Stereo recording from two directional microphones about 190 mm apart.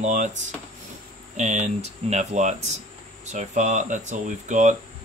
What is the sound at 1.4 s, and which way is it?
Speech, 40° right (ahead or behind).